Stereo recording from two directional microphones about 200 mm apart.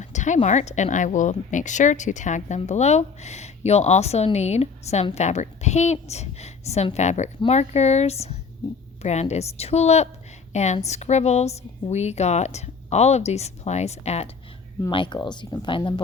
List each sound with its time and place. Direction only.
0.0 s speech: 35° left (ahead or behind)